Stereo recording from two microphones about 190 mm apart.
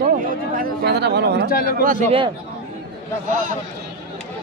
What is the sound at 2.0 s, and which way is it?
Speech, 30° right (ahead or behind).